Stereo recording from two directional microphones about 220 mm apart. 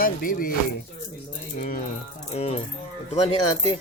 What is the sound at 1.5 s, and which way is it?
Speech, 40° left (ahead or behind).